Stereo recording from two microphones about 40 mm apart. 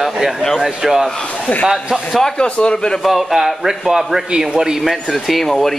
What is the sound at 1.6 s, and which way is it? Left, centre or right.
Speech, right.